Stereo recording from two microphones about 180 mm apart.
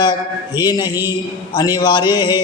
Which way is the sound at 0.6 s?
20° left (ahead or behind).